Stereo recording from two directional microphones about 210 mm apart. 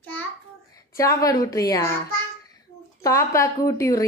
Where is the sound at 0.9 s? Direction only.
15° left (ahead or behind).